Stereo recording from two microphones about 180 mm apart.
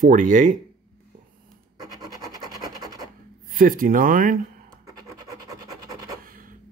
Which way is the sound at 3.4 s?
50° right (ahead or behind).